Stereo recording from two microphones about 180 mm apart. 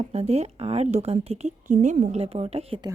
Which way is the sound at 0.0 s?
35° right (ahead or behind).